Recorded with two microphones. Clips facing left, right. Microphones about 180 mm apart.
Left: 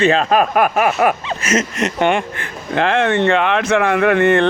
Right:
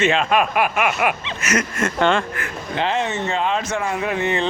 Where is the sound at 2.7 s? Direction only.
70° left (ahead or behind).